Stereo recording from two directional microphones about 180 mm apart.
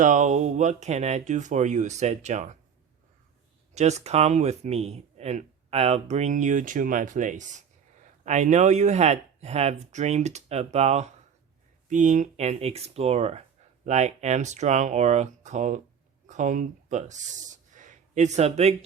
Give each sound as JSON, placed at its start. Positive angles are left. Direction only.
{"t": 0.0, "sound": "speech", "side_deg": -45}
{"t": 3.8, "sound": "speech", "side_deg": -40}